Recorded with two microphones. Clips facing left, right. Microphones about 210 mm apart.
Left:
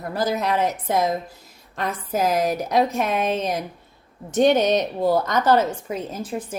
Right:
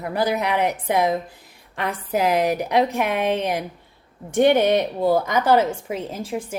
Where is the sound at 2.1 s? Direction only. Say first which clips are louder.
Right 2 dB; 70° right (ahead or behind).